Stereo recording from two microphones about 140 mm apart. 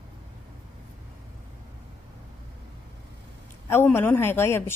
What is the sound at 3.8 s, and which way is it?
Speech, 15° left (ahead or behind).